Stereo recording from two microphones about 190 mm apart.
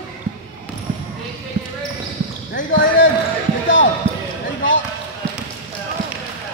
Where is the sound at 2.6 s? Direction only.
90° left.